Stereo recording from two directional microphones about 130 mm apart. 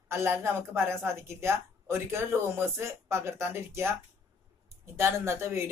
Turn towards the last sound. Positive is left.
turn(degrees=-20)  # may be behind; listen again after turning